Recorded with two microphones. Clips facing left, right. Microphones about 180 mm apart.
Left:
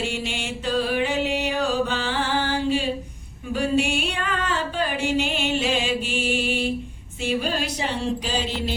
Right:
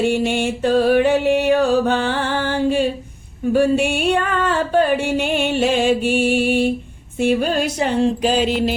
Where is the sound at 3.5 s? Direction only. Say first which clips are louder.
Right 7 dB; 55° right (ahead or behind).